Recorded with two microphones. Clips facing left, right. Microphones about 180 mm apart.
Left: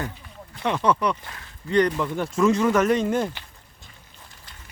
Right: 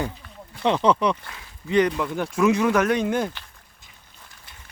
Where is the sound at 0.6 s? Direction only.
25° right (ahead or behind).